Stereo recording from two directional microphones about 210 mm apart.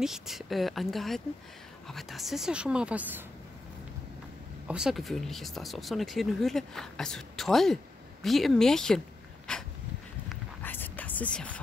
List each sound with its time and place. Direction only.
0.0 s speech: centre (ahead or behind)
4.6 s speech: 5° right (ahead or behind)
9.5 s a sound: 5° left (ahead or behind)